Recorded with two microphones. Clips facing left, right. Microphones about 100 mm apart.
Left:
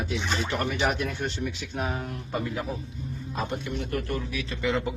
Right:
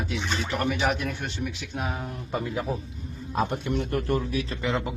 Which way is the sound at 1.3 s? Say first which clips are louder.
Left 1 dB; 10° right (ahead or behind).